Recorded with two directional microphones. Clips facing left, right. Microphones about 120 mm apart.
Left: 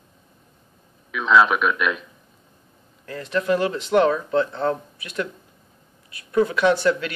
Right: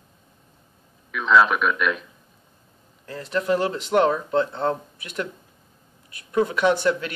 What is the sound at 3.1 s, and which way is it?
Speech, 30° right (ahead or behind).